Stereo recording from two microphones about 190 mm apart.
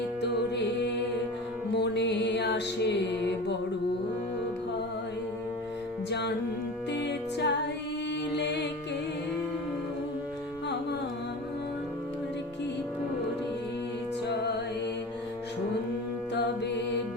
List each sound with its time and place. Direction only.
0.2 s music: 65° left (ahead or behind)
6.1 s music: 60° left (ahead or behind)